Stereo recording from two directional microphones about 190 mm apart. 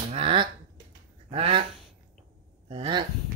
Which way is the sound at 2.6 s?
30° right (ahead or behind).